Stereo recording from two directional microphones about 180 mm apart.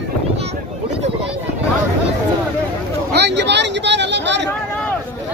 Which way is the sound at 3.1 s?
70° right (ahead or behind).